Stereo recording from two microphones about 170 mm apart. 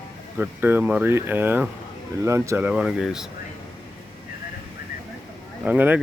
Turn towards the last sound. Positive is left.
turn(degrees=-10)  # may be behind; listen again after turning